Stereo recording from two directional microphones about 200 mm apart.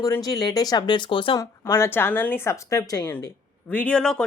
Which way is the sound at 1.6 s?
15° left (ahead or behind).